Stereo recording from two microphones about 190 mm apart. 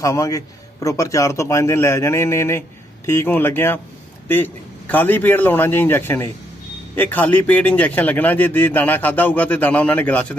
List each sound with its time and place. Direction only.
0.0 s speech: 15° left (ahead or behind)